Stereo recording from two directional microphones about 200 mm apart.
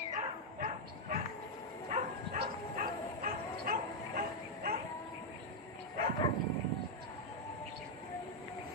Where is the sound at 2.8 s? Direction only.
45° right (ahead or behind).